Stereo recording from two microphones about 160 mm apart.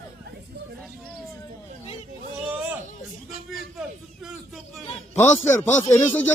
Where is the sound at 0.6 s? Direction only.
90° right.